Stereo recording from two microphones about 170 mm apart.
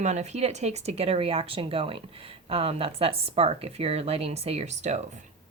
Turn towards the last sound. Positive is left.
turn(degrees=-40)  # may be behind; listen again after turning